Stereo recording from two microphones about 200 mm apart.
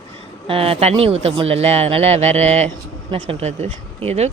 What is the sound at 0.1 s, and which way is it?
Speech, 30° right (ahead or behind).